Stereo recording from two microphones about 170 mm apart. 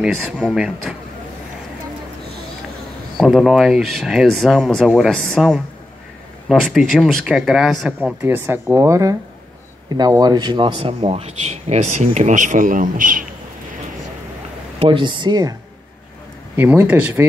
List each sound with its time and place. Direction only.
0.0 s speech: centre (ahead or behind)
3.2 s speech: centre (ahead or behind); by 13.3 s 55° right (ahead or behind)
14.8 s speech: 30° right (ahead or behind)
16.5 s speech: 10° right (ahead or behind)